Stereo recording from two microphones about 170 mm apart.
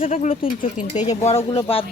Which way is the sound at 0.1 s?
45° left (ahead or behind).